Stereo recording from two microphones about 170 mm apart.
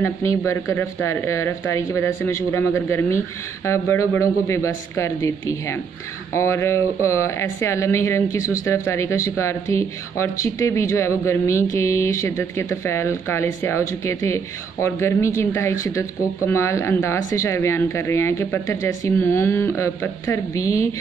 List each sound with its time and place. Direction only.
0.0 s speech: 15° left (ahead or behind)